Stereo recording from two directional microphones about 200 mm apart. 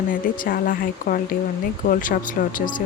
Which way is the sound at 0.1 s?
45° left (ahead or behind).